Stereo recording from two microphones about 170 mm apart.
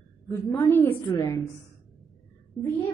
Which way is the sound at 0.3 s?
15° left (ahead or behind).